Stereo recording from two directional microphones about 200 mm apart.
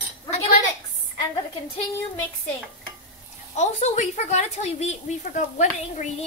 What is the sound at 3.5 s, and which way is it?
A woman's voice, 35° left (ahead or behind).